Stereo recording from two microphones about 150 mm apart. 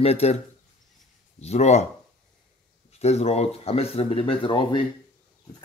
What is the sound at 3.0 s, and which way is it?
Speech, 45° left (ahead or behind).